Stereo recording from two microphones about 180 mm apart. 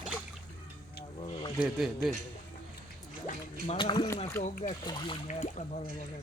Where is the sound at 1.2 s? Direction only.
30° left (ahead or behind).